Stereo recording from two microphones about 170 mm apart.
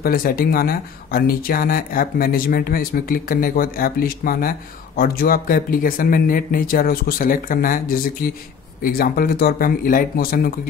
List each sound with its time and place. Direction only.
0.0 s speech: 60° left (ahead or behind)